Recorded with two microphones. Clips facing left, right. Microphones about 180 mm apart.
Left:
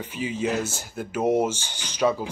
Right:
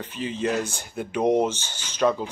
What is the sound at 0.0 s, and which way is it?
Speech, 10° left (ahead or behind).